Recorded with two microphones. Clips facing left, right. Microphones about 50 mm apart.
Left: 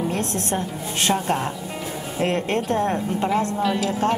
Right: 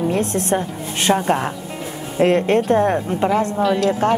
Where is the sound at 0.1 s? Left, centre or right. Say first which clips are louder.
Right 6 dB; right.